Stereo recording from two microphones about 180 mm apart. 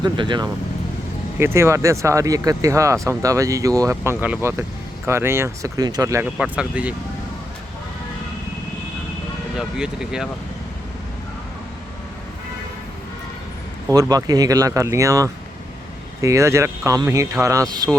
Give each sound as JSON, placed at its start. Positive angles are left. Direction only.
{"t": 0.0, "sound": "speech", "side_deg": -25}
{"t": 1.4, "sound": "speech", "side_deg": -15}
{"t": 6.2, "sound": "speech", "side_deg": -5}
{"t": 9.6, "sound": "speech", "side_deg": -5}
{"t": 13.9, "sound": "speech", "side_deg": -20}